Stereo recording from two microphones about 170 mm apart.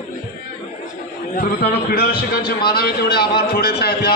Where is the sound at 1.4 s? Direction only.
65° left (ahead or behind).